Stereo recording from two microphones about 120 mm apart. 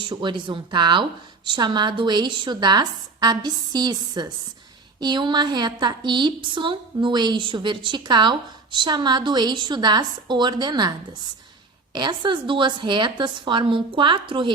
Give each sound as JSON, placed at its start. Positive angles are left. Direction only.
{"t": 0.0, "sound": "a woman's voice", "side_deg": -45}
{"t": 11.9, "sound": "a woman's voice", "side_deg": -40}